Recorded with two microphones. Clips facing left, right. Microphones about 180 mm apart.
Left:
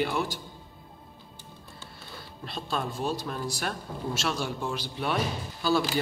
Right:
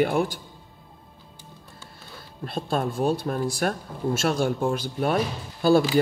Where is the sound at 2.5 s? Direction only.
50° right (ahead or behind).